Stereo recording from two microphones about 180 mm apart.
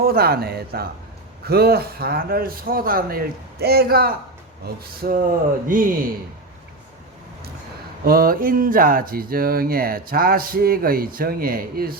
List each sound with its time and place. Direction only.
0.0 s a man's voice: 60° right (ahead or behind)
8.0 s speech: 55° right (ahead or behind)